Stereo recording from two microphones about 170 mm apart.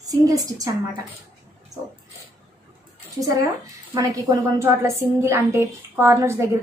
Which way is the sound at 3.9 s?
25° right (ahead or behind).